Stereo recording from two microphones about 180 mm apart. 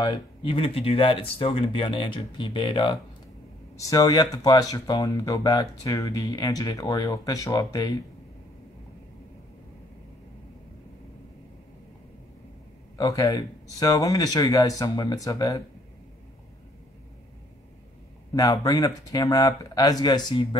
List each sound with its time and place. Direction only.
0.0 s speech: 30° left (ahead or behind)
12.9 s speech: 20° left (ahead or behind)
18.3 s speech: 20° left (ahead or behind)